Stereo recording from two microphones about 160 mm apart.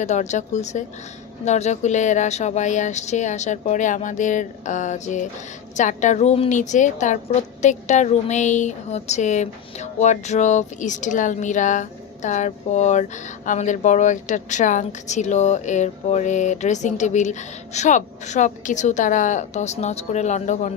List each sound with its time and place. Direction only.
0.0 s a woman's voice: 45° left (ahead or behind)